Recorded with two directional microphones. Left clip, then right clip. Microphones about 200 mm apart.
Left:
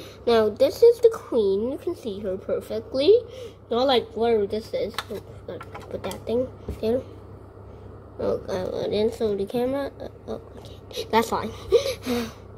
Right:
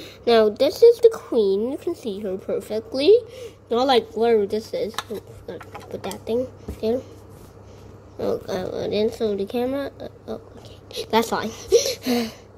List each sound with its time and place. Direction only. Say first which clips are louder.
0.2 s a woman's voice: right 3 dB; 15° right (ahead or behind)
3.7 s dishes: right 3 dB; 30° right (ahead or behind)
5.9 s a woman's voice: right 1 dB; 10° right (ahead or behind)
8.2 s a woman's voice: right 1 dB; 15° right (ahead or behind)